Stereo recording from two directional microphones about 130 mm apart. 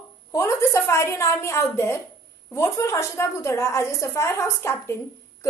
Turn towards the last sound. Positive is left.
turn(degrees=20)  # may be behind; listen again after turning